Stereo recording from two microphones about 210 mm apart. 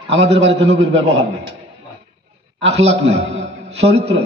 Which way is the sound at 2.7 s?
30° right (ahead or behind).